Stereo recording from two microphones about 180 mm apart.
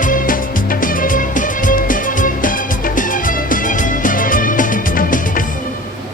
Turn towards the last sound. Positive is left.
turn(degrees=50)  # may be behind; listen again after turning